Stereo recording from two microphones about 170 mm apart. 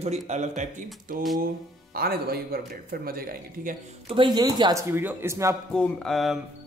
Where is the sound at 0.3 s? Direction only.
45° right (ahead or behind).